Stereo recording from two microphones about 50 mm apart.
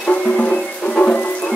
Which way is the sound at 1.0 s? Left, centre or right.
Left.